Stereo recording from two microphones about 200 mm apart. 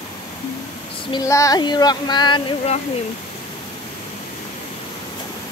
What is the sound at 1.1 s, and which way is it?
Speech, 15° left (ahead or behind).